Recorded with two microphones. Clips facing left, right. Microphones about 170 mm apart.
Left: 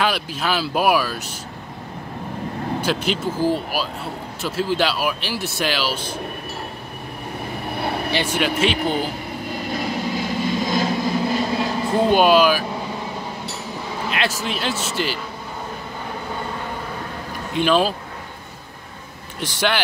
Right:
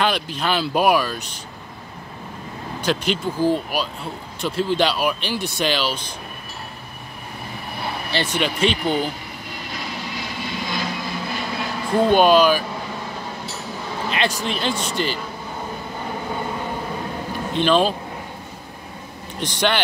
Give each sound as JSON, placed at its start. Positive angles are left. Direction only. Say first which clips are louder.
{"t": 0.0, "sound": "speech", "louder": "even", "side_deg": 5}
{"t": 2.8, "sound": "speech", "louder": "right 2 dB", "side_deg": 5}
{"t": 8.1, "sound": "speech", "louder": "right 1 dB", "side_deg": 10}
{"t": 9.7, "sound": "vehicle", "louder": "left 7 dB", "side_deg": 45}
{"t": 12.1, "sound": "speech", "louder": "right 1 dB", "side_deg": 5}
{"t": 14.0, "sound": "speech", "louder": "right 1 dB", "side_deg": 5}
{"t": 17.6, "sound": "speech", "louder": "even", "side_deg": 5}
{"t": 19.4, "sound": "speech", "louder": "right 1 dB", "side_deg": 5}